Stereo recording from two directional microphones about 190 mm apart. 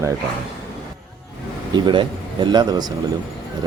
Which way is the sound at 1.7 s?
25° right (ahead or behind).